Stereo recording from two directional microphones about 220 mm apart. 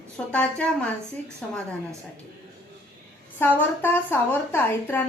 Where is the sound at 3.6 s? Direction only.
10° left (ahead or behind).